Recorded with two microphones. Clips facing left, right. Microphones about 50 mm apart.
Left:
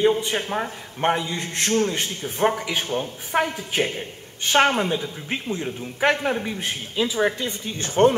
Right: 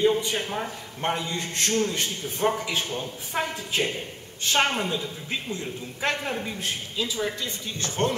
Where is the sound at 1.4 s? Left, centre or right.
Centre.